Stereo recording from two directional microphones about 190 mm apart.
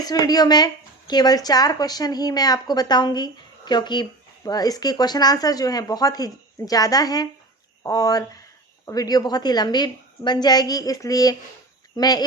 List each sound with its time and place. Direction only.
0.0 s a woman's voice: 20° left (ahead or behind)